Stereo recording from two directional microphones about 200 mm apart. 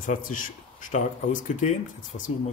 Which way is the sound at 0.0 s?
40° left (ahead or behind).